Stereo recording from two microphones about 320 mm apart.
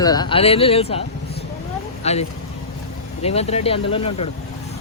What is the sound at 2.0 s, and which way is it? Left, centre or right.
Speech, centre.